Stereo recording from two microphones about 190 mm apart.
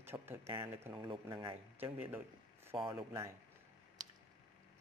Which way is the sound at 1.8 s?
10° right (ahead or behind).